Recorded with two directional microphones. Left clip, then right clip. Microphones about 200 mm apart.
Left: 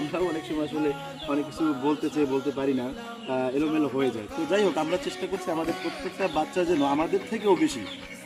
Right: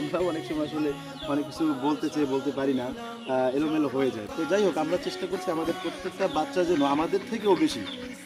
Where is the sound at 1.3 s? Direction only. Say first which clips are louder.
Even; 5° left (ahead or behind).